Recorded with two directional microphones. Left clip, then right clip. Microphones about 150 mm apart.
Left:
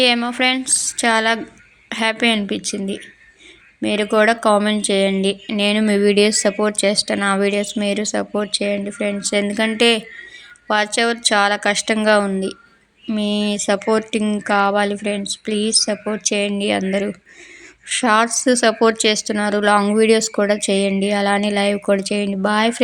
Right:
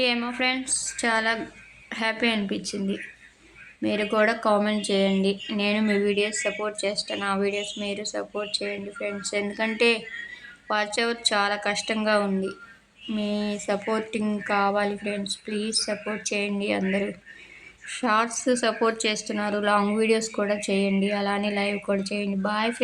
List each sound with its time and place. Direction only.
0.0 s speech: 35° left (ahead or behind)